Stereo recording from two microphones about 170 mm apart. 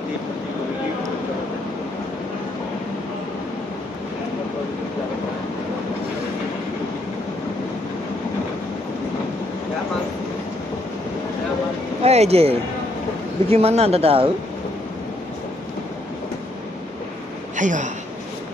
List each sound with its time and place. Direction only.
12.0 s speech: 40° right (ahead or behind)
17.6 s speech: 50° right (ahead or behind)